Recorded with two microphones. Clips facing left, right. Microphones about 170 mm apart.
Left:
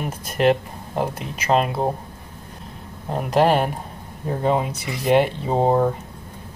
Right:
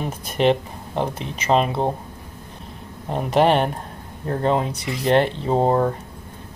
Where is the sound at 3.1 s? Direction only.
Centre (ahead or behind).